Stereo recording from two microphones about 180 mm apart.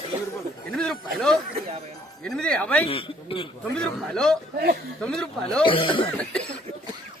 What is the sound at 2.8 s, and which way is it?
Speech, 30° left (ahead or behind).